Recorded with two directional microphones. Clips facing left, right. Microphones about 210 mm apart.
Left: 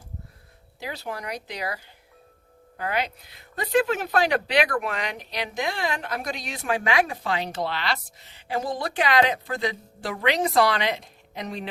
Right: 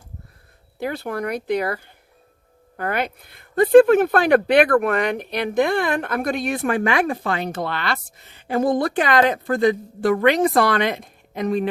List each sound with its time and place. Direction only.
0.8 s speech: 55° right (ahead or behind)